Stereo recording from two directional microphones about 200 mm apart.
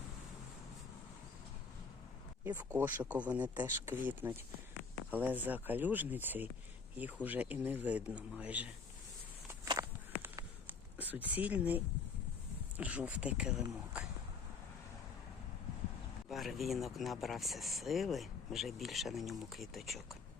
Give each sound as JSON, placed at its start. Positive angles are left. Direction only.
{"t": 2.4, "sound": "speech", "side_deg": -10}
{"t": 9.5, "sound": "walk", "side_deg": -15}
{"t": 10.2, "sound": "a sound", "side_deg": -10}
{"t": 12.7, "sound": "speech", "side_deg": -5}
{"t": 16.3, "sound": "speech", "side_deg": 0}